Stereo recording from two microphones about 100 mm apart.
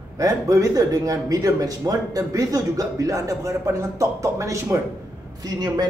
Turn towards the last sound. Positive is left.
turn(degrees=-40)  # may be behind; listen again after turning